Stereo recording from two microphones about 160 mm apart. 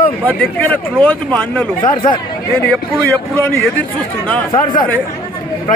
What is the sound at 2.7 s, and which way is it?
Speech, 10° left (ahead or behind).